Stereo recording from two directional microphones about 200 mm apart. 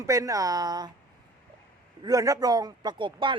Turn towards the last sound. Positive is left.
turn(degrees=-25)  # may be behind; listen again after turning